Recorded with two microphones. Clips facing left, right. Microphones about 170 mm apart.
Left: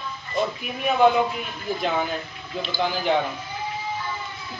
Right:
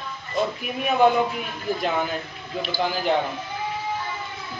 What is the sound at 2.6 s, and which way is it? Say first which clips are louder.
Speech: even; 10° right (ahead or behind).